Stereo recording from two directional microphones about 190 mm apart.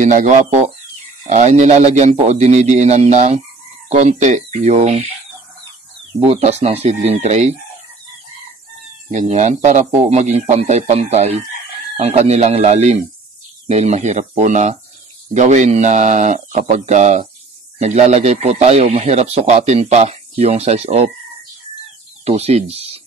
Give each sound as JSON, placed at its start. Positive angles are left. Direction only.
{"t": 0.0, "sound": "speech", "side_deg": -40}
{"t": 6.2, "sound": "speech", "side_deg": -35}
{"t": 9.1, "sound": "speech", "side_deg": -40}
{"t": 22.2, "sound": "speech", "side_deg": -35}